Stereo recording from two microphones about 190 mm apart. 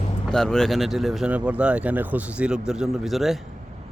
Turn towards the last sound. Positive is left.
turn(degrees=0)  # may be behind; listen again after turning